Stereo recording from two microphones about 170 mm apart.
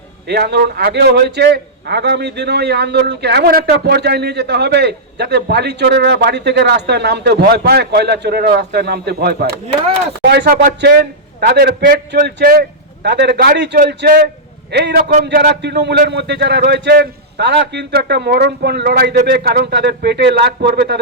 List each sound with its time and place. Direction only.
0.3 s a man's voice: 75° right (ahead or behind)
14.7 s a man's voice: 75° right (ahead or behind)
15.1 s a man's voice: 60° right (ahead or behind); by 21.0 s 75° right (ahead or behind)